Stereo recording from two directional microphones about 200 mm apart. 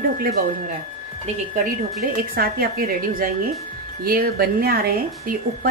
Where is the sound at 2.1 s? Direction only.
50° right (ahead or behind).